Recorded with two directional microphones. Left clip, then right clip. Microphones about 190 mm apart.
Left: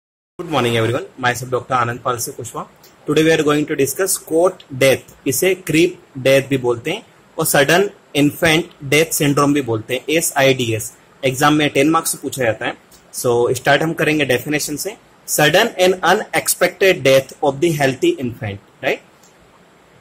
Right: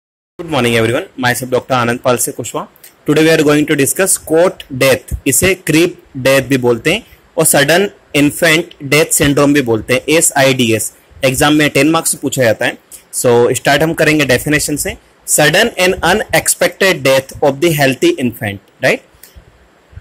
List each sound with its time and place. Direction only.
0.5 s speech: 20° right (ahead or behind)